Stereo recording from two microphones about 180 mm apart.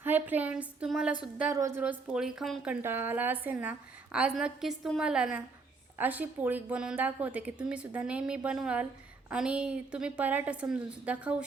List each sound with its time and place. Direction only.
0.0 s a woman's voice: 10° right (ahead or behind)
1.8 s a woman's voice: 5° right (ahead or behind)